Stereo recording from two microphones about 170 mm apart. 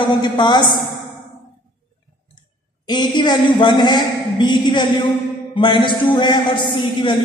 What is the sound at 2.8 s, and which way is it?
A woman's voice, 25° left (ahead or behind).